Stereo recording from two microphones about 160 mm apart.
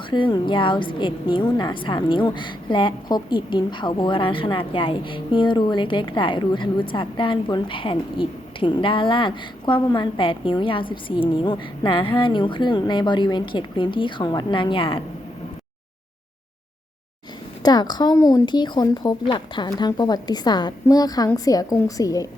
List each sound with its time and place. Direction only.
0.1 s a woman's voice: 30° left (ahead or behind)
17.6 s speech: 25° left (ahead or behind)